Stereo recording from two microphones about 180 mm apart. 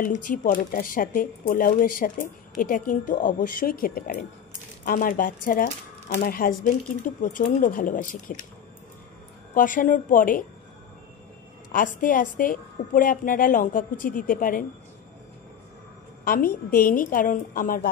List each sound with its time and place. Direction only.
0.0 s speech: 45° left (ahead or behind)
9.5 s speech: 45° left (ahead or behind)
11.7 s speech: 50° left (ahead or behind)
16.3 s speech: 55° left (ahead or behind)